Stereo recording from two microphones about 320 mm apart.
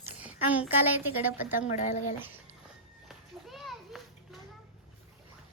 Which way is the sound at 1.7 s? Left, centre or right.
Left.